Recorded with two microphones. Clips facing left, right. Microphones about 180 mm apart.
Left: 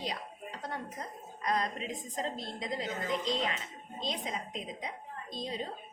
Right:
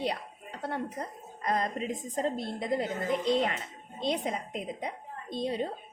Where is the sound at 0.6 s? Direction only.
60° right (ahead or behind).